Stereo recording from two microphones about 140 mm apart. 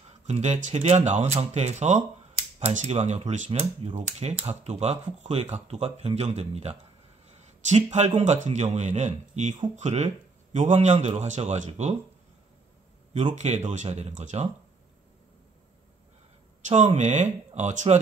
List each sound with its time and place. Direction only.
0.3 s speech: 55° right (ahead or behind)
7.2 s a sound: 50° right (ahead or behind)
8.2 s speech: 55° right (ahead or behind)
13.1 s speech: 55° right (ahead or behind)
16.6 s speech: 55° right (ahead or behind)